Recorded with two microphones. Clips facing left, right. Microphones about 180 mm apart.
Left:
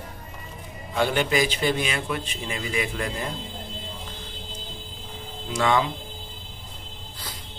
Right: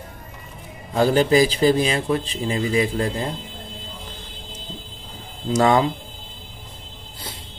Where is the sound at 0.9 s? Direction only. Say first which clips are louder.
Right 7 dB; 35° right (ahead or behind).